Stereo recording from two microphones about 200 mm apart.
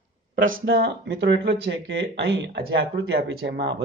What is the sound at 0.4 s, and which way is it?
Speech, 45° right (ahead or behind).